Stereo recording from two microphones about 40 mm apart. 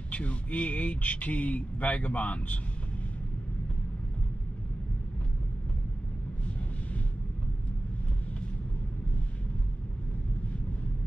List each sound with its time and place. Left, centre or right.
0.1 s speech: left